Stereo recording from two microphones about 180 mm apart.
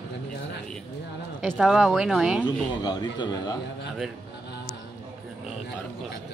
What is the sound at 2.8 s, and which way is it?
Speech, 25° left (ahead or behind).